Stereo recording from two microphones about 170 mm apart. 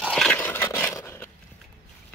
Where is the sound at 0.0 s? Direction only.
Centre (ahead or behind).